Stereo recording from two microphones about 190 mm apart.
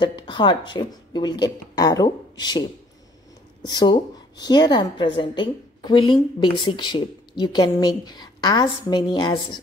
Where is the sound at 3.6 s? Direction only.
20° left (ahead or behind).